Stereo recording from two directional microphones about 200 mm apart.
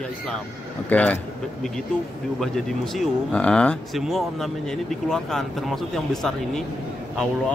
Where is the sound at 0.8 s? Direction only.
5° left (ahead or behind).